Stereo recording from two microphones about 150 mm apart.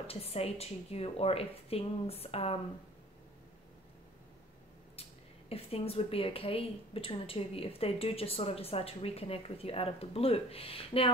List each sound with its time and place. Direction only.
0.0 s a woman's voice: 40° left (ahead or behind)
5.5 s a woman's voice: 40° left (ahead or behind)